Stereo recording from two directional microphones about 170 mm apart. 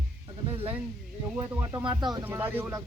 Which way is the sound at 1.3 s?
10° right (ahead or behind).